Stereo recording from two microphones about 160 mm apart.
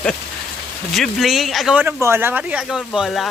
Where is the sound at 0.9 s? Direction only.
Centre (ahead or behind).